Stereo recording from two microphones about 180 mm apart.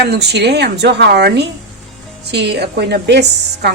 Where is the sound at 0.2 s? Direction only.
70° right (ahead or behind).